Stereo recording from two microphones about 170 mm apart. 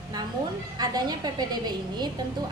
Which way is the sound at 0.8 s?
25° right (ahead or behind).